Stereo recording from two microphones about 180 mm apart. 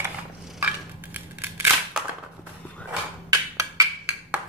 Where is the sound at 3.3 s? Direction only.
20° right (ahead or behind).